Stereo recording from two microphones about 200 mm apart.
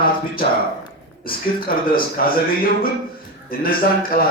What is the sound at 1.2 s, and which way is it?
Speech, 45° left (ahead or behind).